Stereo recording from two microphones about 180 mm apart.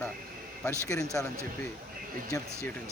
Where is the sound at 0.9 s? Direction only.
20° left (ahead or behind).